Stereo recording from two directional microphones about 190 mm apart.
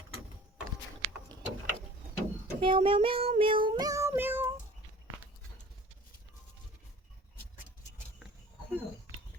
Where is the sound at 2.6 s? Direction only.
25° right (ahead or behind); by 4.6 s 10° right (ahead or behind).